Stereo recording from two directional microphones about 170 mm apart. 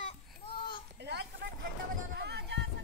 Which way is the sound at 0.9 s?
80° right.